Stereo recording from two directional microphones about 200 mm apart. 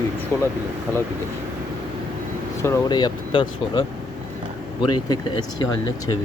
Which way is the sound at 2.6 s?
15° left (ahead or behind).